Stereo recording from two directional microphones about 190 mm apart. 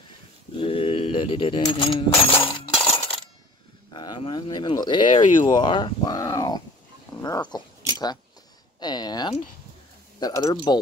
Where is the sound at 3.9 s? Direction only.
25° left (ahead or behind).